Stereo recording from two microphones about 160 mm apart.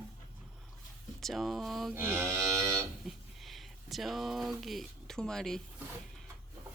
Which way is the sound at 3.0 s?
Centre (ahead or behind).